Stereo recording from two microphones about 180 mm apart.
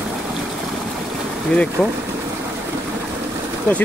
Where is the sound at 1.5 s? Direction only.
5° left (ahead or behind).